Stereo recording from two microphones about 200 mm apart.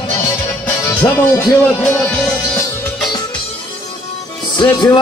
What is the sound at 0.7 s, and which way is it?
Speech, 10° left (ahead or behind).